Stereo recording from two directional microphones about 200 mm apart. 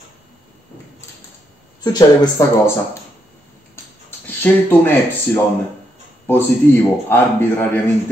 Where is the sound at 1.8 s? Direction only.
15° left (ahead or behind).